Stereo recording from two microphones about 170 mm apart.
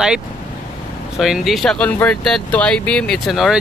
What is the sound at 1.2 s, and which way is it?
Speech, centre (ahead or behind).